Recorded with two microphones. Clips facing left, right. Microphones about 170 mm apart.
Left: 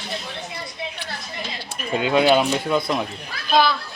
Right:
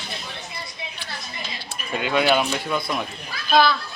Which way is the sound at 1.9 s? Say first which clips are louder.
Left 3 dB; 25° left (ahead or behind).